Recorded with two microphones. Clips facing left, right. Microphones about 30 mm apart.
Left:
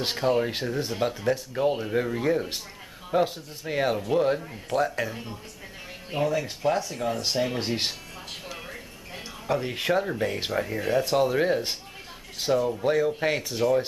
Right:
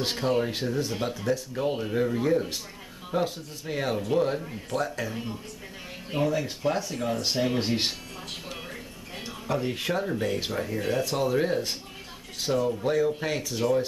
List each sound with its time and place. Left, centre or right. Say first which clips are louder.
0.1 s speech: left 3 dB; centre
0.5 s speech: even; centre
1.6 s speech: left 2 dB; centre
8.5 s music: even; centre
9.5 s speech: left 3 dB; centre
13.6 s speech: left 2 dB; centre